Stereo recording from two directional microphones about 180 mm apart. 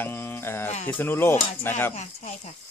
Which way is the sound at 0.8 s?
10° left (ahead or behind).